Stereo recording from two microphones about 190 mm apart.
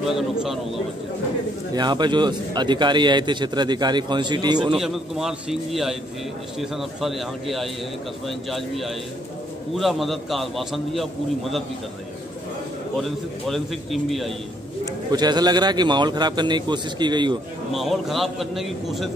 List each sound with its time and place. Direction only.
0.0 s a man's voice: centre (ahead or behind)
1.7 s a man's voice: 20° right (ahead or behind)
4.7 s a man's voice: centre (ahead or behind)
13.5 s a man's voice: centre (ahead or behind)
15.0 s a man's voice: 20° right (ahead or behind)
17.7 s a man's voice: centre (ahead or behind)